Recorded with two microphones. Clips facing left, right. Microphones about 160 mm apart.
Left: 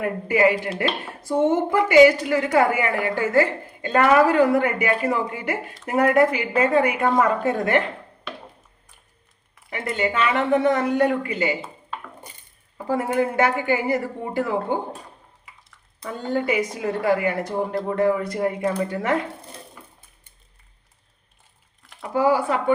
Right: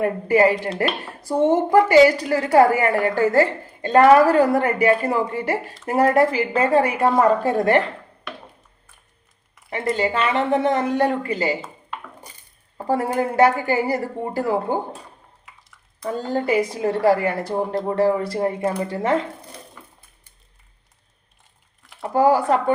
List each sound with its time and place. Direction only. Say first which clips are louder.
0.0 s a woman's voice: right 3 dB; 35° right (ahead or behind)
9.6 s a woman's voice: right 3 dB; 35° right (ahead or behind)
12.7 s a sound: right 2 dB; 35° right (ahead or behind)
13.1 s a woman's voice: right 4 dB; 35° right (ahead or behind)
16.0 s a woman's voice: right 2 dB; 35° right (ahead or behind)
22.0 s a woman's voice: right 3 dB; 40° right (ahead or behind)